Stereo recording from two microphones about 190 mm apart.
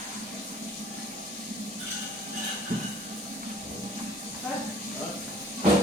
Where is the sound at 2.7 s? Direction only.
45° right (ahead or behind).